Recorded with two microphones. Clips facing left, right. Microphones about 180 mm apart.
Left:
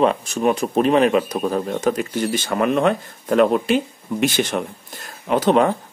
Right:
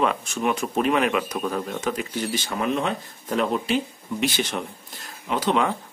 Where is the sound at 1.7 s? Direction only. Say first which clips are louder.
Left 6 dB; 45° left (ahead or behind).